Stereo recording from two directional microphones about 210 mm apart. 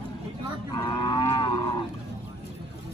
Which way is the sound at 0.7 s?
20° left (ahead or behind).